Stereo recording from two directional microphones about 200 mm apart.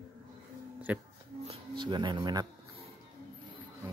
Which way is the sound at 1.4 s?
25° right (ahead or behind).